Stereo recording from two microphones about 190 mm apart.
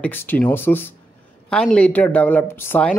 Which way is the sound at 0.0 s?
10° left (ahead or behind).